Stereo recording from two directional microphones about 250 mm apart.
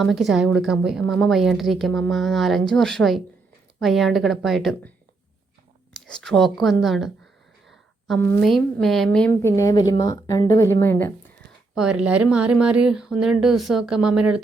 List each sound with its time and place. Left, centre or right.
0.0 s a woman's voice: centre
5.9 s a woman's voice: centre
7.7 s a sound: centre
8.4 s a woman's voice: centre
11.7 s a woman's voice: centre